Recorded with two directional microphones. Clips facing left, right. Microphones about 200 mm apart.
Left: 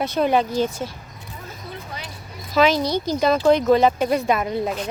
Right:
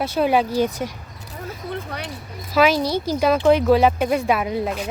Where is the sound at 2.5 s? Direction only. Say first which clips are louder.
Even; 10° right (ahead or behind).